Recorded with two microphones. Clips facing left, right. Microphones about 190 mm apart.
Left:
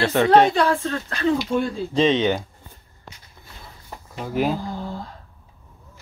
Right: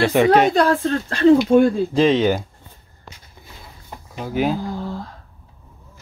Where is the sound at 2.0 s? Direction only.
5° right (ahead or behind).